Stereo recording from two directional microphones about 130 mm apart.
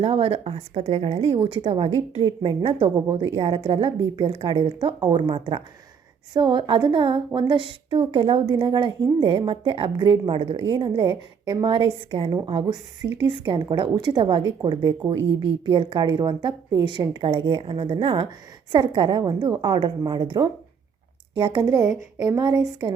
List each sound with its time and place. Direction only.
0.0 s a woman's voice: 50° right (ahead or behind); by 22.6 s 30° right (ahead or behind)